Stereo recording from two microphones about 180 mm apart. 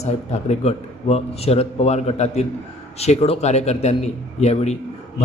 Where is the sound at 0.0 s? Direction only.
35° left (ahead or behind).